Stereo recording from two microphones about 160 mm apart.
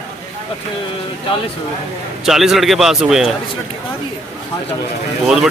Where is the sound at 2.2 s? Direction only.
Centre (ahead or behind).